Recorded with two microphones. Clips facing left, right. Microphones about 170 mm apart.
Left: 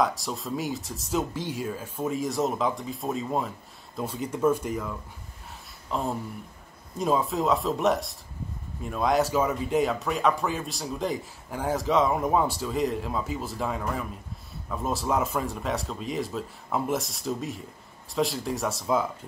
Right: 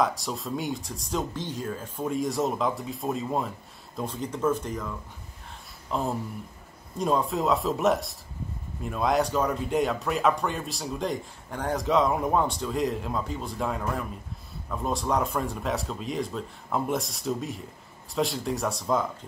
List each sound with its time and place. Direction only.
0.0 s speech: centre (ahead or behind)
5.9 s a sound: centre (ahead or behind)
7.0 s speech: centre (ahead or behind)